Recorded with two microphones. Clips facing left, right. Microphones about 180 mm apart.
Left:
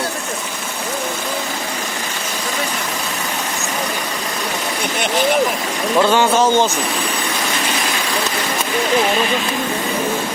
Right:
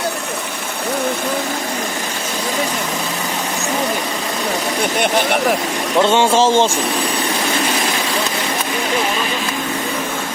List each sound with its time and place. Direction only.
6.0 s speech: 25° right (ahead or behind)